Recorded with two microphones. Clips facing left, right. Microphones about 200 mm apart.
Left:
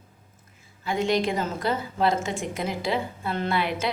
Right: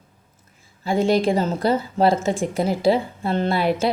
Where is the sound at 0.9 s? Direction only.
35° right (ahead or behind).